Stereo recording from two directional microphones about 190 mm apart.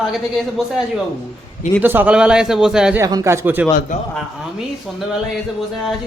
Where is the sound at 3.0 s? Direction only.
15° right (ahead or behind).